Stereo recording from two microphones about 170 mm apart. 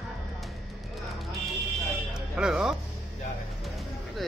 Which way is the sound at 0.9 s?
Centre (ahead or behind).